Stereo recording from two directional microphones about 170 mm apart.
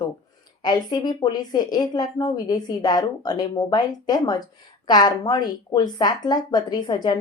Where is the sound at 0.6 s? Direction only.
25° left (ahead or behind).